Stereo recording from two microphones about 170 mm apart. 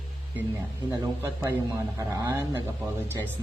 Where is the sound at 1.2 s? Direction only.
15° right (ahead or behind).